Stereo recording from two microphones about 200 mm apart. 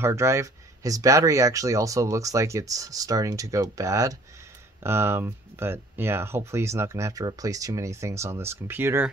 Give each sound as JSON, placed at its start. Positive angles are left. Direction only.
{"t": 0.0, "sound": "speech", "side_deg": -15}